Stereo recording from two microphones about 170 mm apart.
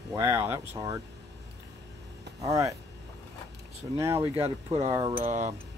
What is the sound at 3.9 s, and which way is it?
Speech, 15° right (ahead or behind).